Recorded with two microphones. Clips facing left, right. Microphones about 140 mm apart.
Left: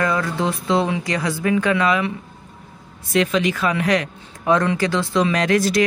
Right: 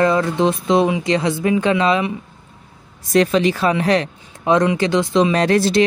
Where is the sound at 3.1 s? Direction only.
35° right (ahead or behind); by 5.3 s 20° right (ahead or behind).